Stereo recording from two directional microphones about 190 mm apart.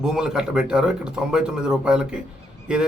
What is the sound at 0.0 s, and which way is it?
A man's voice, 5° right (ahead or behind).